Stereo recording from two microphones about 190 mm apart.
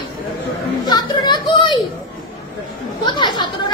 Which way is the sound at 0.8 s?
20° left (ahead or behind).